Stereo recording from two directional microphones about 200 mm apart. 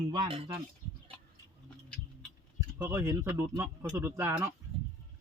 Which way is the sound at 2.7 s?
15° right (ahead or behind).